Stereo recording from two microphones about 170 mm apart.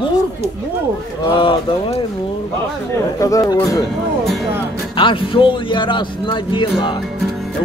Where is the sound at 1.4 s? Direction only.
30° left (ahead or behind).